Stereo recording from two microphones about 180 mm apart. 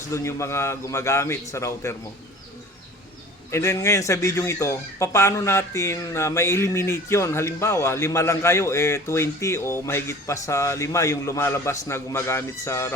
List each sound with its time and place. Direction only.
0.1 s speech: 15° left (ahead or behind)
3.5 s speech: 15° left (ahead or behind)